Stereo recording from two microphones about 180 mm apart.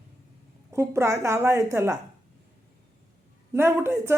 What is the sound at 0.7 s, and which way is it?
A woman's voice, 15° right (ahead or behind).